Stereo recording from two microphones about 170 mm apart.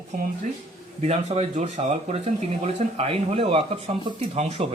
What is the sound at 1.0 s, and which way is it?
Speech, 40° right (ahead or behind).